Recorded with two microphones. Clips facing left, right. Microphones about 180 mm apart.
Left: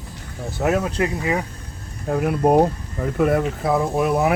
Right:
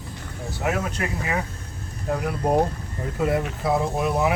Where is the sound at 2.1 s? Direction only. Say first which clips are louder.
Left 5 dB; 60° left (ahead or behind).